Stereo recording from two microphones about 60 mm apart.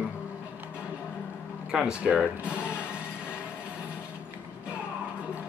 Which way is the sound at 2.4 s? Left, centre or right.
Centre.